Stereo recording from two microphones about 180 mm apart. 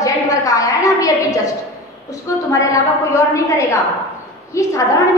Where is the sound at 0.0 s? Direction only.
20° left (ahead or behind).